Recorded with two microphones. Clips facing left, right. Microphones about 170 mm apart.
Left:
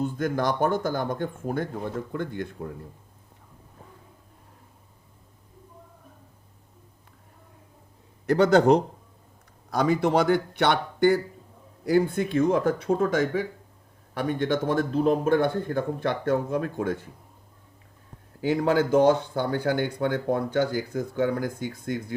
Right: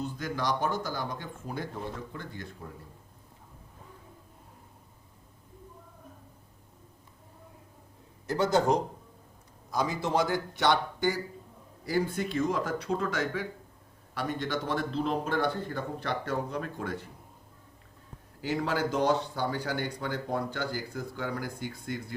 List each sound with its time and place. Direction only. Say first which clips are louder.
0.0 s a man's voice: left 7 dB; 50° left (ahead or behind)
8.3 s a man's voice: left 7 dB; 65° left (ahead or behind); by 17.1 s 50° left (ahead or behind)
18.4 s a man's voice: left 7 dB; 55° left (ahead or behind)